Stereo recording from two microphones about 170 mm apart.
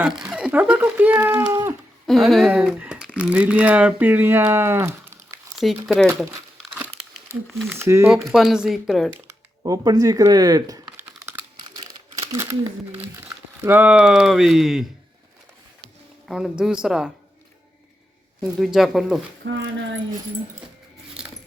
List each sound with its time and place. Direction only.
0.2 s a sound: 5° right (ahead or behind)
2.0 s speech: centre (ahead or behind)
5.8 s speech: centre (ahead or behind)
7.3 s speech: 15° left (ahead or behind)
7.7 s speech: 15° right (ahead or behind)
8.3 s speech: 5° right (ahead or behind)
9.2 s speech: 20° right (ahead or behind)
11.0 s typing: 15° right (ahead or behind)
12.3 s speech: 15° right (ahead or behind)
16.3 s speech: 5° right (ahead or behind)
18.3 s speech: 5° right (ahead or behind)
19.5 s speech: 90° right